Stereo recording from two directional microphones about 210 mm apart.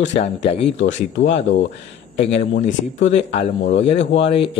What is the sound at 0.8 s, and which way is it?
Mantra, 35° left (ahead or behind).